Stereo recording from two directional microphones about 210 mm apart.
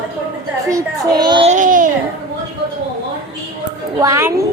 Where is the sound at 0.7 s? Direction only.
15° right (ahead or behind).